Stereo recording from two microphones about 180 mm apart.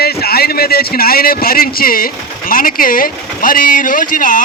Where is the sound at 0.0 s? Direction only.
60° left (ahead or behind).